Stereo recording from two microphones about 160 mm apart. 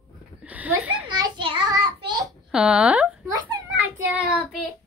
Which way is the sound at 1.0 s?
25° right (ahead or behind).